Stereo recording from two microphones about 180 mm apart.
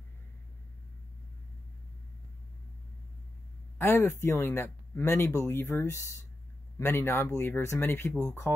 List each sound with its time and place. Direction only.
3.7 s speech: 10° left (ahead or behind)